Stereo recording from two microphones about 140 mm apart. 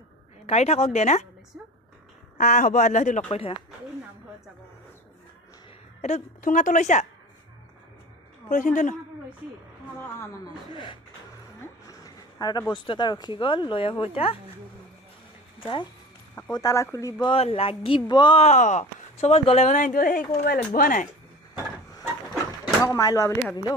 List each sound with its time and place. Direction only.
0.5 s speech: 50° left (ahead or behind)
2.3 s speech: 65° left (ahead or behind)
3.3 s speech: 45° left (ahead or behind)
5.9 s speech: 55° left (ahead or behind)
8.5 s a woman's voice: 70° left (ahead or behind)
10.0 s speech: 20° left (ahead or behind)
10.7 s speech: 35° left (ahead or behind)
15.6 s speech: 35° left (ahead or behind)
16.3 s speech: 25° left (ahead or behind)
17.3 s speech: 45° left (ahead or behind)
18.4 s speech: 55° left (ahead or behind); by 20.2 s 75° left (ahead or behind)
20.4 s speech: 90° left
22.8 s speech: 25° left (ahead or behind)